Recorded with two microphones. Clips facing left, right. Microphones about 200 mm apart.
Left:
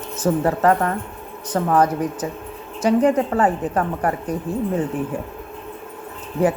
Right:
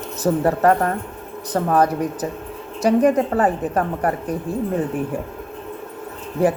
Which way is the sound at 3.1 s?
35° right (ahead or behind).